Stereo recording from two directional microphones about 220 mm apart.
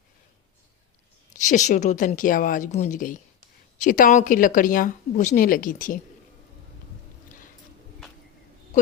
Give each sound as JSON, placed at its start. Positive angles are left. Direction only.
{"t": 1.4, "sound": "a woman's voice", "side_deg": 35}